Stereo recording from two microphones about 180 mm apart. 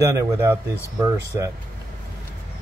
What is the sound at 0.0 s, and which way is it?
Speech, 15° right (ahead or behind).